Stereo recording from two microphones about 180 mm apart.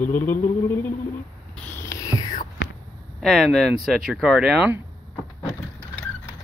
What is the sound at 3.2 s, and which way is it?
Speech, centre (ahead or behind).